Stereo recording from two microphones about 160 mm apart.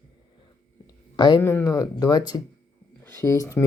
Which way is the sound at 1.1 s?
30° left (ahead or behind).